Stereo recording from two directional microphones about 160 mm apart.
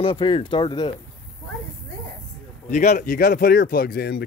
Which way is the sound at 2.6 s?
50° left (ahead or behind).